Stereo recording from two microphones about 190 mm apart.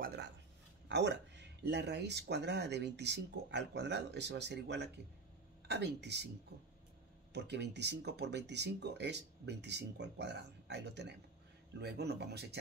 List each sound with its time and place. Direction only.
0.0 s a sound: 55° right (ahead or behind)
0.8 s speech: 65° right (ahead or behind)
7.3 s speech: 65° right (ahead or behind)